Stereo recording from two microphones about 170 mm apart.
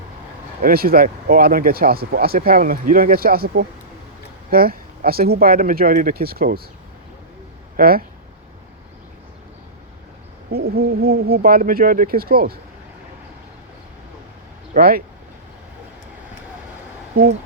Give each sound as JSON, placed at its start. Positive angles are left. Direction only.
{"t": 0.6, "sound": "speech", "side_deg": -60}
{"t": 7.8, "sound": "speech", "side_deg": -60}
{"t": 10.5, "sound": "speech", "side_deg": -65}
{"t": 14.7, "sound": "speech", "side_deg": -60}